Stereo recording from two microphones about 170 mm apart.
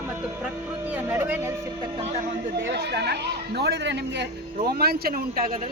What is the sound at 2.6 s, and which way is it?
Speech, 80° right.